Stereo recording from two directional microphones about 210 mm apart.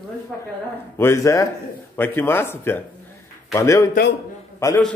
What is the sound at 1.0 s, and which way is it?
A man's voice, 15° left (ahead or behind).